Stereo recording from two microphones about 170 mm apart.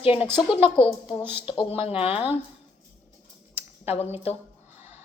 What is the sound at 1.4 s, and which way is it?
Speech, 30° left (ahead or behind).